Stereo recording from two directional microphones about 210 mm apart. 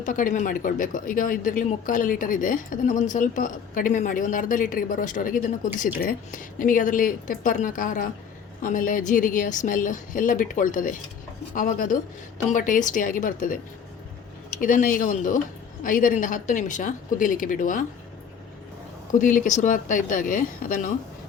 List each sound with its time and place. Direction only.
0.0 s speech: 40° left (ahead or behind)
14.6 s speech: 40° left (ahead or behind)
19.2 s speech: 40° left (ahead or behind)